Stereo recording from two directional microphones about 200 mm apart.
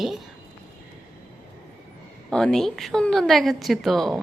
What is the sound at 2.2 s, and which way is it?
A woman's voice, 5° left (ahead or behind).